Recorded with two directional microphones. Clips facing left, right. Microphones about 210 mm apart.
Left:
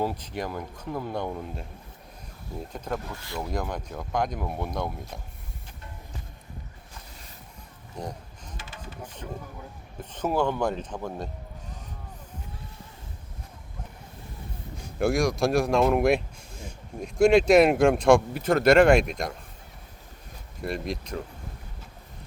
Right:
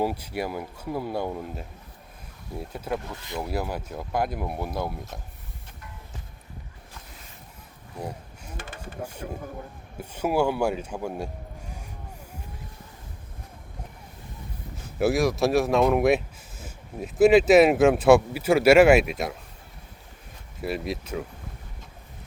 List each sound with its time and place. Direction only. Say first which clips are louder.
0.0 s speech: right 2 dB; 10° right (ahead or behind)
7.9 s a sound: right 1 dB; 5° right (ahead or behind)
8.5 s a sound: right 4 dB; 50° right (ahead or behind)
10.0 s speech: right 2 dB; 10° right (ahead or behind)
14.9 s speech: right 2 dB; 5° right (ahead or behind)
20.6 s speech: right 2 dB; 5° right (ahead or behind)